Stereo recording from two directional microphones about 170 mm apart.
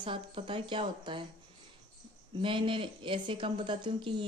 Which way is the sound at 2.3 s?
30° right (ahead or behind).